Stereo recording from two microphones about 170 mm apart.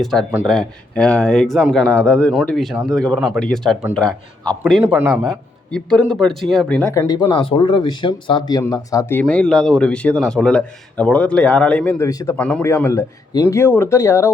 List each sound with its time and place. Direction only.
0.0 s speech: centre (ahead or behind)
4.6 s a man's voice: 10° right (ahead or behind)
5.7 s speech: 5° left (ahead or behind)
7.1 s speech: 25° left (ahead or behind)
12.4 s speech: 5° left (ahead or behind)